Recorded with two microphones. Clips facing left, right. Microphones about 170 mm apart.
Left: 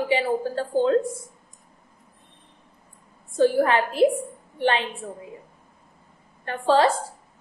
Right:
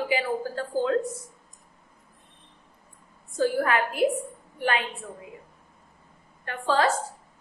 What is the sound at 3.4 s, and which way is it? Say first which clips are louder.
A woman's voice: left 5 dB; 30° left (ahead or behind).